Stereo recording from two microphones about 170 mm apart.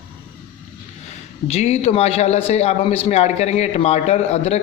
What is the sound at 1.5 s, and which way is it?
A man's voice, 40° left (ahead or behind).